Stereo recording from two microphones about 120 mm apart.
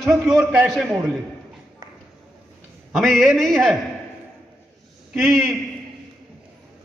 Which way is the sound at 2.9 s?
Centre (ahead or behind).